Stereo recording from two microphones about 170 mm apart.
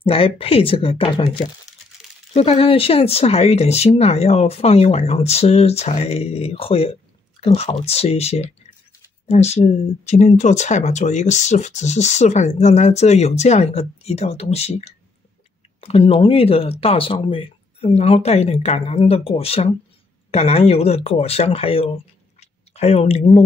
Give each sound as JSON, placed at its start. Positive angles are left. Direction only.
{"t": 0.0, "sound": "speech", "side_deg": 35}
{"t": 2.3, "sound": "speech", "side_deg": 35}
{"t": 22.4, "sound": "a sound", "side_deg": 40}